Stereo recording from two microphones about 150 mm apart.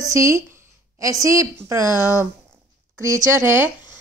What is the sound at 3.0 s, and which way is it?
Speech, 20° right (ahead or behind).